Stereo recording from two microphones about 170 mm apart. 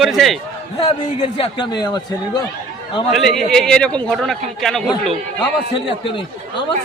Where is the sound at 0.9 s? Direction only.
35° left (ahead or behind).